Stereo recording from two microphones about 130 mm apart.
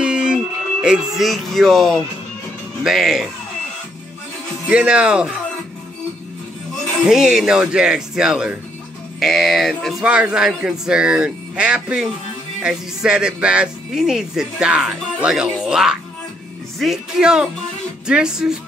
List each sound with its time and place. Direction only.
0.0 s music: 5° right (ahead or behind)
2.8 s speech: centre (ahead or behind)
4.6 s speech: 10° right (ahead or behind)
7.0 s speech: 5° right (ahead or behind)